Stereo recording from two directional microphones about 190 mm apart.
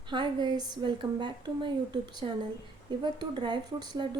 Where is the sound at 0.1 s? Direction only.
25° right (ahead or behind).